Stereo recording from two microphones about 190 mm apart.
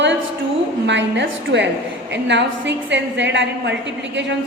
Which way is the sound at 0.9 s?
70° right (ahead or behind).